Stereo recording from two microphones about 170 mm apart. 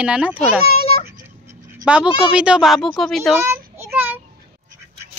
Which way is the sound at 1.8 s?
5° right (ahead or behind).